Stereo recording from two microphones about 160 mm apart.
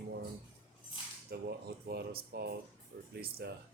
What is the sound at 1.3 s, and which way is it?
Speech, 80° right.